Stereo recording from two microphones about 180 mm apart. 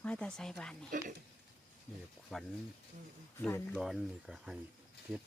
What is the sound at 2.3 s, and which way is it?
Speech, centre (ahead or behind).